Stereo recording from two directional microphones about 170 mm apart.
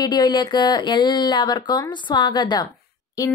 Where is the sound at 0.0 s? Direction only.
25° left (ahead or behind).